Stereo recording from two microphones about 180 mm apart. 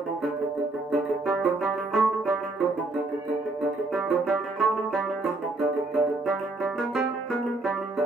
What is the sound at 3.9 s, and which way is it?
Music, centre (ahead or behind).